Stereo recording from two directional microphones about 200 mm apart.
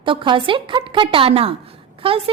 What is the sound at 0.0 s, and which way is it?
A woman's voice, 25° right (ahead or behind).